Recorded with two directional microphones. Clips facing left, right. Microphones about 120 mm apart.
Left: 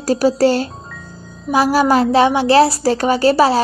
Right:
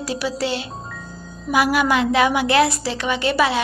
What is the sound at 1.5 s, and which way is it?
A woman's voice, 30° left (ahead or behind).